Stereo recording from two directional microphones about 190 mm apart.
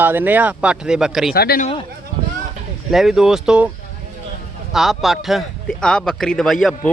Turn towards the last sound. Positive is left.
turn(degrees=0)  # may be behind; listen again after turning